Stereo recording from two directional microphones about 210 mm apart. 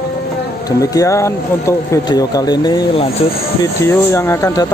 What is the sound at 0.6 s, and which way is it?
Speech, 15° left (ahead or behind).